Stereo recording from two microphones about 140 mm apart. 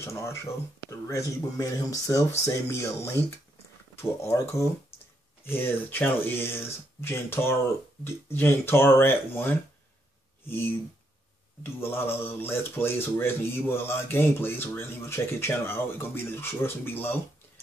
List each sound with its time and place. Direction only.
0.0 s speech: 20° left (ahead or behind)
11.6 s speech: 15° left (ahead or behind)